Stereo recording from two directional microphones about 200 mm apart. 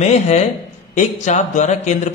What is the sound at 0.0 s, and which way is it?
A man's voice, 35° left (ahead or behind).